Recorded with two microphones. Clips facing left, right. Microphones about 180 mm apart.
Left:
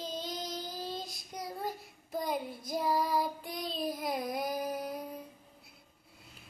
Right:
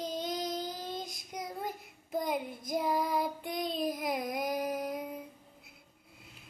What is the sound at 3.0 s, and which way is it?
Child singing, 20° right (ahead or behind).